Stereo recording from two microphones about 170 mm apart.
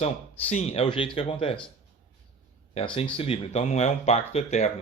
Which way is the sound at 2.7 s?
35° left (ahead or behind).